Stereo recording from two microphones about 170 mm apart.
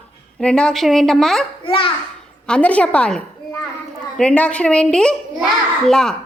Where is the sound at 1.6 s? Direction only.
30° left (ahead or behind).